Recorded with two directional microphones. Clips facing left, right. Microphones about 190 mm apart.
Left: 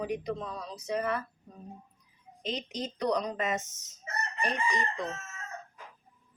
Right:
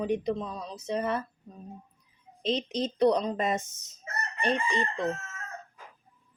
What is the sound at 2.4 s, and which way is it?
A woman's voice, 30° right (ahead or behind).